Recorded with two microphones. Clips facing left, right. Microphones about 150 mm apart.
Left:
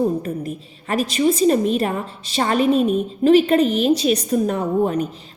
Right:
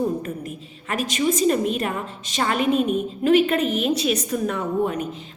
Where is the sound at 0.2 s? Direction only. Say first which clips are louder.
Left 5 dB; 35° left (ahead or behind).